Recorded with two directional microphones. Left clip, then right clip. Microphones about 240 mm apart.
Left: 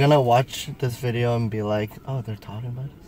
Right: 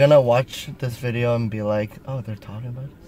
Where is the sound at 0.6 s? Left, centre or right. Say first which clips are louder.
Left 2 dB; centre.